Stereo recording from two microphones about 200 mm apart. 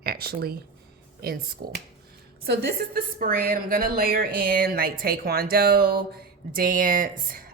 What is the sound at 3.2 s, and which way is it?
A woman's voice, 45° right (ahead or behind).